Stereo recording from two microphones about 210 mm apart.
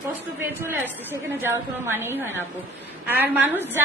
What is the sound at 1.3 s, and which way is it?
A woman's voice, 10° right (ahead or behind).